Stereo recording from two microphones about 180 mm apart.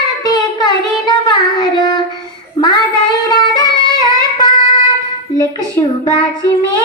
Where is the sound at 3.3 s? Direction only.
20° left (ahead or behind).